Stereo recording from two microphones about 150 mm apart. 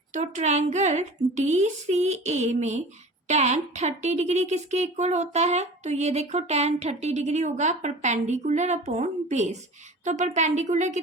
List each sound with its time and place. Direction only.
0.1 s speech: 50° right (ahead or behind)